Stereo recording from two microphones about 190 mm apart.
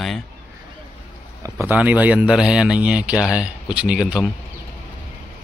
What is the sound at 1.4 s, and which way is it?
Speech, 10° right (ahead or behind).